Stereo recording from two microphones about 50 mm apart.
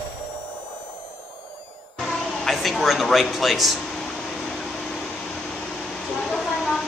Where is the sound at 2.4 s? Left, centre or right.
Centre.